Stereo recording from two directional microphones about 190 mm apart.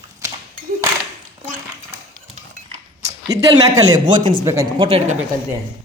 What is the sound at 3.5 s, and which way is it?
Speech, 20° right (ahead or behind).